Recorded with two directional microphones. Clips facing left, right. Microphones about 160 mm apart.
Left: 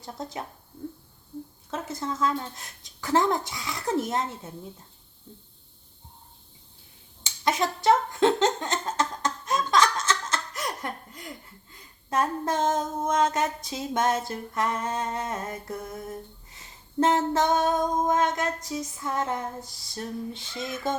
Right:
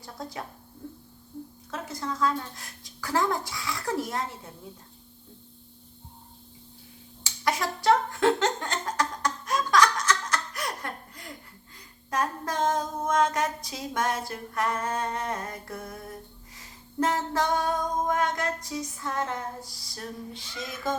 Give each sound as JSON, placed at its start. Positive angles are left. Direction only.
{"t": 0.0, "sound": "child singing", "side_deg": 20}
{"t": 1.7, "sound": "child singing", "side_deg": 25}
{"t": 7.3, "sound": "a sound", "side_deg": 20}
{"t": 12.1, "sound": "child singing", "side_deg": 25}